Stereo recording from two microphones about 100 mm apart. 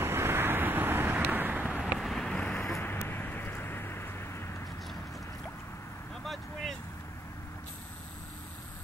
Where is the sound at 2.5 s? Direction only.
20° left (ahead or behind).